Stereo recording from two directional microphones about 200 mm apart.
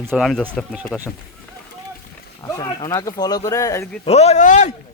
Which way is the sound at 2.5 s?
15° left (ahead or behind).